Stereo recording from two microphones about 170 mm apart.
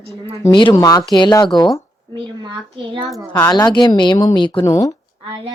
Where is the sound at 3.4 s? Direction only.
25° left (ahead or behind).